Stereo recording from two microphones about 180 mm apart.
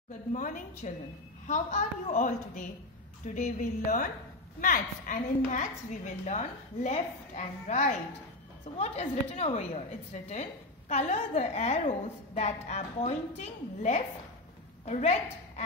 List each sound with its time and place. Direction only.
0.3 s a woman's voice: 45° left (ahead or behind)